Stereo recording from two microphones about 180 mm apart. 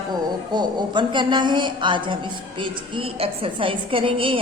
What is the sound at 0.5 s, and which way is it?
A woman's voice, 25° right (ahead or behind).